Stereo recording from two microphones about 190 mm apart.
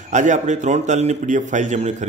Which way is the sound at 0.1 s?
40° right (ahead or behind).